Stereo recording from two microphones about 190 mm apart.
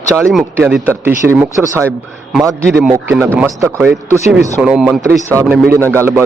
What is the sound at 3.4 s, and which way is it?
A man's voice, 15° right (ahead or behind).